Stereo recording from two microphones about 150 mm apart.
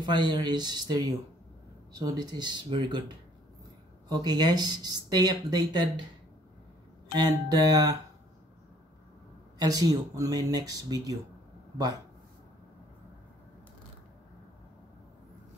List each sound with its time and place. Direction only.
0.0 s speech: 30° right (ahead or behind)
4.1 s speech: 25° right (ahead or behind)
7.2 s speech: 25° right (ahead or behind)
9.6 s speech: 25° right (ahead or behind)